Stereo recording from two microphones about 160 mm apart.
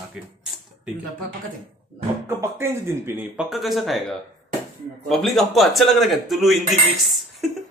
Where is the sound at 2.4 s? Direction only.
15° right (ahead or behind).